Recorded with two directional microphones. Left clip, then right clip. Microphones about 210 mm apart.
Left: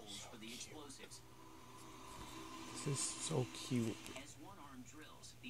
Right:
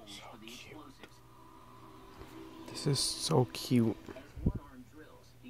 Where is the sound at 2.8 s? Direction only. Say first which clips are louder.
Right 11 dB; 15° right (ahead or behind).